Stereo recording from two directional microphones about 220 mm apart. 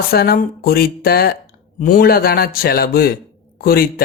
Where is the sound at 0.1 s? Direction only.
45° left (ahead or behind).